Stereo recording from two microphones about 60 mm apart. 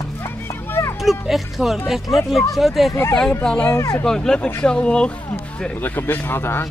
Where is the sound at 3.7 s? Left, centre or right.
Left.